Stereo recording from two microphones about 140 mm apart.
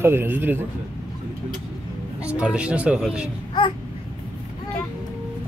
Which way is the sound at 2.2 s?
10° right (ahead or behind).